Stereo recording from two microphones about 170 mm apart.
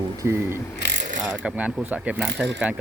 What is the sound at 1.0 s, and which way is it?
Pulleys, 50° right (ahead or behind).